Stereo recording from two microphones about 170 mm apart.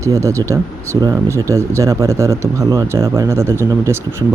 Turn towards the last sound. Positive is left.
turn(degrees=-15)  # may be behind; listen again after turning